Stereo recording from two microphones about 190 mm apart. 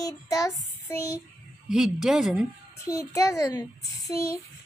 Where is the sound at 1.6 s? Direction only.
Centre (ahead or behind).